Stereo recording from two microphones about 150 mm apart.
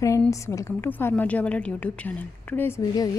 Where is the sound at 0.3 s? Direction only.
20° left (ahead or behind).